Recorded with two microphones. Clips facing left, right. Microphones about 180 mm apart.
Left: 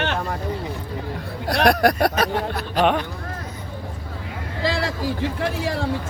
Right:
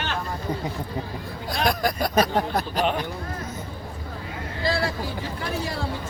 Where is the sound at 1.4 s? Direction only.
70° left (ahead or behind).